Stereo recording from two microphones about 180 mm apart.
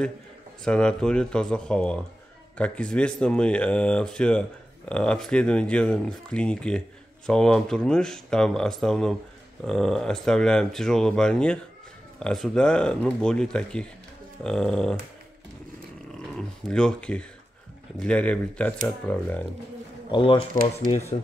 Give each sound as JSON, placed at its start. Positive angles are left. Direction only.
{"t": 0.7, "sound": "speech", "side_deg": 5}
{"t": 16.3, "sound": "speech", "side_deg": 5}
{"t": 20.1, "sound": "speech", "side_deg": 25}
{"t": 20.3, "sound": "speech", "side_deg": -50}